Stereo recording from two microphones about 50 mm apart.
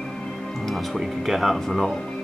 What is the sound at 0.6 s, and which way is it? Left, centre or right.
Music, centre.